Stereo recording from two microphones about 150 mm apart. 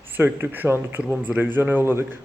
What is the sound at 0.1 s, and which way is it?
A man's voice, 15° right (ahead or behind).